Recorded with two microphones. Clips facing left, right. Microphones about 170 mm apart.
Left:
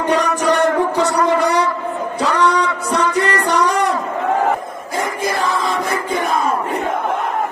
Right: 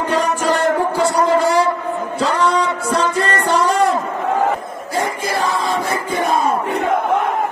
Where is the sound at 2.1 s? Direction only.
25° right (ahead or behind).